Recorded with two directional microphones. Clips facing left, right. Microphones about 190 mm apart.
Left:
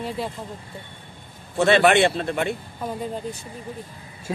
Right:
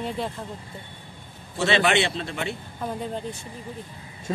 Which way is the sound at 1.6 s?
50° left (ahead or behind).